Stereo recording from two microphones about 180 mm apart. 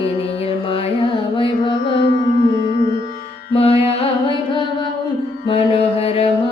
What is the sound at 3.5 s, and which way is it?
Music, 30° left (ahead or behind).